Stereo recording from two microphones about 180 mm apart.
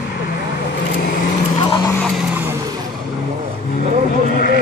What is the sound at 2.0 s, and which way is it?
Vehicle, centre (ahead or behind).